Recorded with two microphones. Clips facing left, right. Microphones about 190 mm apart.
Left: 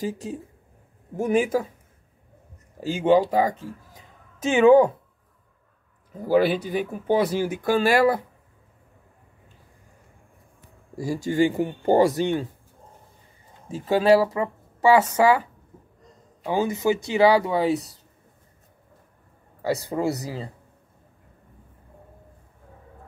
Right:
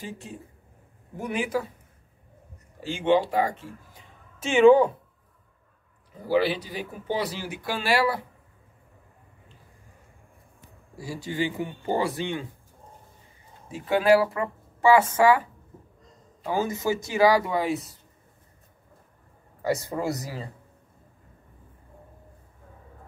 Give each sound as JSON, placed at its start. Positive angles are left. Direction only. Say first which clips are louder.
{"t": 0.0, "sound": "a man's voice", "louder": "left 9 dB", "side_deg": 40}
{"t": 2.8, "sound": "speech", "louder": "left 4 dB", "side_deg": 40}
{"t": 6.2, "sound": "a man's voice", "louder": "left 4 dB", "side_deg": 50}
{"t": 11.0, "sound": "a man's voice", "louder": "left 8 dB", "side_deg": 45}
{"t": 13.7, "sound": "speech", "louder": "left 2 dB", "side_deg": 30}
{"t": 16.4, "sound": "speech", "louder": "left 4 dB", "side_deg": 25}
{"t": 19.9, "sound": "speech", "louder": "left 4 dB", "side_deg": 10}